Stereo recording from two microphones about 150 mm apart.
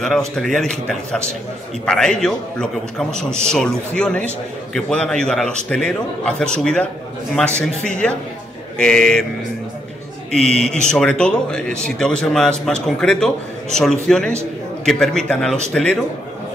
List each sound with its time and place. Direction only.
0.0 s speech: centre (ahead or behind)
10.5 s speech: 5° left (ahead or behind)